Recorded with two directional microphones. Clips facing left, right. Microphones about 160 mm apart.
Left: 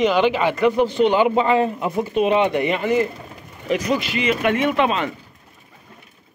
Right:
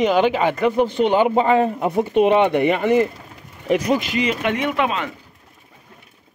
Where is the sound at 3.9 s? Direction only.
45° right (ahead or behind).